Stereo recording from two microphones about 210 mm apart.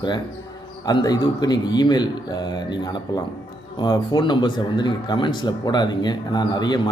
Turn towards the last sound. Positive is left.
turn(degrees=20)  # may be behind; listen again after turning